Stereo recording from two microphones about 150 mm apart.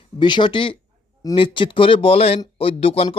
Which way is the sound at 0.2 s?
30° left (ahead or behind).